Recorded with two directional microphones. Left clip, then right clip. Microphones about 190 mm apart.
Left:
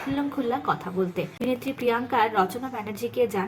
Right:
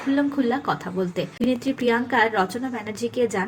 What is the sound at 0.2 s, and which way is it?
A woman's voice, 15° right (ahead or behind).